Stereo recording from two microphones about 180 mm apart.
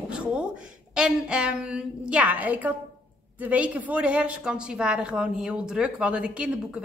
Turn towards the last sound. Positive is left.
turn(degrees=-5)  # may be behind; listen again after turning